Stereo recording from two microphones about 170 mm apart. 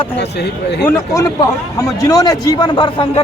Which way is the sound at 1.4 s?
20° left (ahead or behind).